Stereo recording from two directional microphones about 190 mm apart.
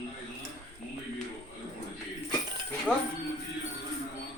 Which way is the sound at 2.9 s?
5° left (ahead or behind).